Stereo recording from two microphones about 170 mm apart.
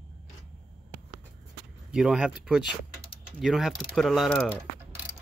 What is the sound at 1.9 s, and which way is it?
Speech, 5° right (ahead or behind).